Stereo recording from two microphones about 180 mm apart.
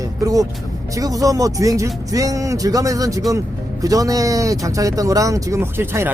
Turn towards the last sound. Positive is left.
turn(degrees=-15)  # may be behind; listen again after turning